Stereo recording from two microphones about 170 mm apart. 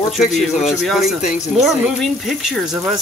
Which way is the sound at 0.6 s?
Centre (ahead or behind).